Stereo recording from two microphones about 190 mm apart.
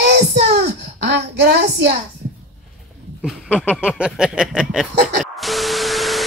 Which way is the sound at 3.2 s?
5° left (ahead or behind).